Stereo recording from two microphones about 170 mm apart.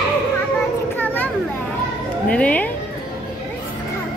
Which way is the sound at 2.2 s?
5° left (ahead or behind).